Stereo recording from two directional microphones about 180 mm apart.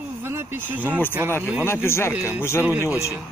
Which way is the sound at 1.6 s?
15° left (ahead or behind).